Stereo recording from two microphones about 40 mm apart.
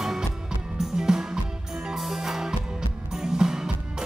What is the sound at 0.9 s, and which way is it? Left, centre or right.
Music, centre.